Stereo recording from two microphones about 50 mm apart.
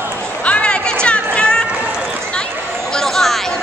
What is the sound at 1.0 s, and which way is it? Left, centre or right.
Chatter, centre.